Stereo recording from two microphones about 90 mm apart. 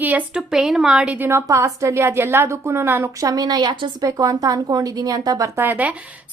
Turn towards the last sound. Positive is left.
turn(degrees=-20)  # may be behind; listen again after turning